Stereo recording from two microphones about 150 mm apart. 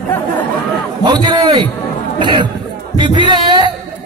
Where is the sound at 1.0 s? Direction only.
30° right (ahead or behind).